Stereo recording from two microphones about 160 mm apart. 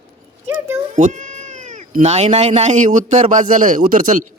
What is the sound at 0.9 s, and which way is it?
Speech, 50° right (ahead or behind).